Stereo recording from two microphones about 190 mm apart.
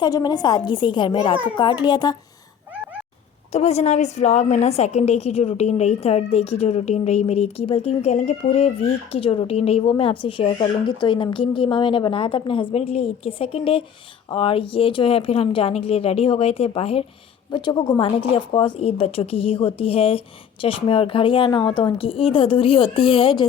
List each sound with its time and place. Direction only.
0.0 s speech: 20° left (ahead or behind)
3.5 s a woman's voice: 35° left (ahead or behind)